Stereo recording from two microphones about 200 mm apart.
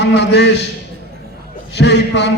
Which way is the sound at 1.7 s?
60° left (ahead or behind).